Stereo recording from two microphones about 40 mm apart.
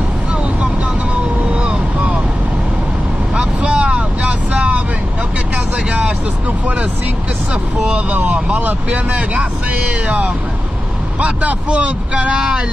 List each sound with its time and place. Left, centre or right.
3.3 s boat: right
8.1 s speech: right
10.0 s speech: right